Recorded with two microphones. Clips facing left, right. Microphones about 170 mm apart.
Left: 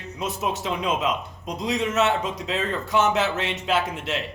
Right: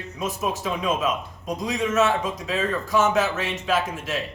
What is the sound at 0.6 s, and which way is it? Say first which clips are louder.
A man's voice: right 1 dB; 20° left (ahead or behind).